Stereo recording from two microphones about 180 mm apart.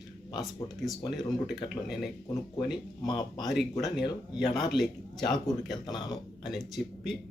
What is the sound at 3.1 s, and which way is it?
Speech, 25° left (ahead or behind).